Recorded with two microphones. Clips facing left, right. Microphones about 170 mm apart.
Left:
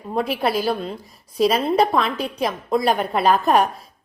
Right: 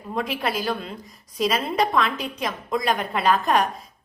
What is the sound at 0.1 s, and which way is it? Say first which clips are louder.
A woman's voice: left 5 dB; 35° left (ahead or behind).